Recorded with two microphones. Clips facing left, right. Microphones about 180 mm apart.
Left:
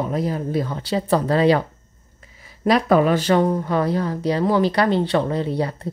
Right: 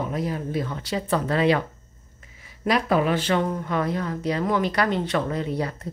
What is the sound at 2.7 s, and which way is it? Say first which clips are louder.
Speech: left 5 dB; 40° left (ahead or behind).